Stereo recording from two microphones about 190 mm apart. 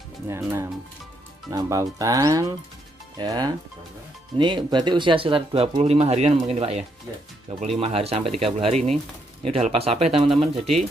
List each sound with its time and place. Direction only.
1.5 s speech: 20° right (ahead or behind)